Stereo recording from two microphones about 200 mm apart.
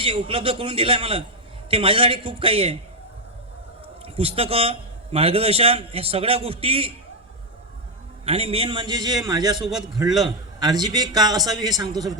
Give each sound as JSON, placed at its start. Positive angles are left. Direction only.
{"t": 0.0, "sound": "a man's voice", "side_deg": -25}
{"t": 4.0, "sound": "a man's voice", "side_deg": -30}
{"t": 8.2, "sound": "a man's voice", "side_deg": -30}